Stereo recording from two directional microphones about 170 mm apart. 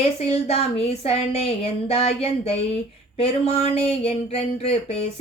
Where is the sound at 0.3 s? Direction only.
35° left (ahead or behind).